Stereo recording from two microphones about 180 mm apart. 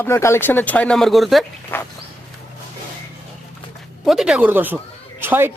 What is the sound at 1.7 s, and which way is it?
Speech, 10° left (ahead or behind).